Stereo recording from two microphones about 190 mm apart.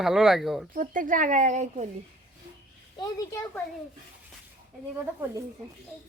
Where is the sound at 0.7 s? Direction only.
45° right (ahead or behind).